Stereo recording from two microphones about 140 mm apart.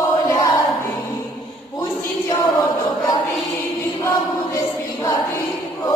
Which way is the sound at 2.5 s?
25° left (ahead or behind).